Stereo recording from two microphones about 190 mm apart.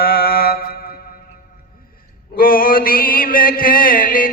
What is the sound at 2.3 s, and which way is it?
Mantra, 50° left (ahead or behind).